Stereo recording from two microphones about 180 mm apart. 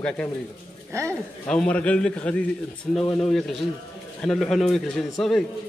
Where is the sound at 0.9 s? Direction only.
15° right (ahead or behind).